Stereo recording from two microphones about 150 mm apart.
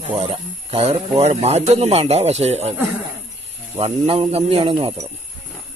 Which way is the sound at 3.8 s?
40° right (ahead or behind).